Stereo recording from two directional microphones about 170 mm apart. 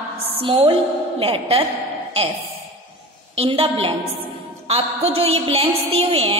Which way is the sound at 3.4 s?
35° right (ahead or behind).